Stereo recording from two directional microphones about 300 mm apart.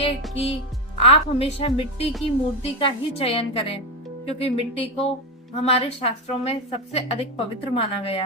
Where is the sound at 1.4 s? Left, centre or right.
Centre.